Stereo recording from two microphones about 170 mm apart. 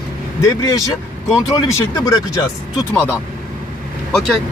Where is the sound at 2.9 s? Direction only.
10° left (ahead or behind).